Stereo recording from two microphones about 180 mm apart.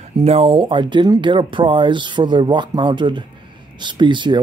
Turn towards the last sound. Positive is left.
turn(degrees=-25)  # may be behind; listen again after turning